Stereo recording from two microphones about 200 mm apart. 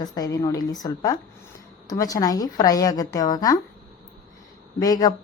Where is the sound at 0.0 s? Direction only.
15° left (ahead or behind).